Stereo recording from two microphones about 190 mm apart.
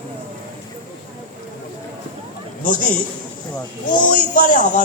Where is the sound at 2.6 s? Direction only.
45° left (ahead or behind).